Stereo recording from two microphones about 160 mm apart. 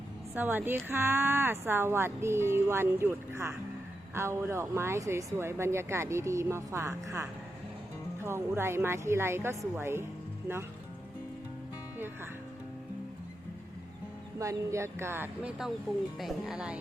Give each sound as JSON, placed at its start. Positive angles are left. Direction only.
{"t": 0.3, "sound": "speech", "side_deg": -10}
{"t": 14.3, "sound": "speech", "side_deg": -20}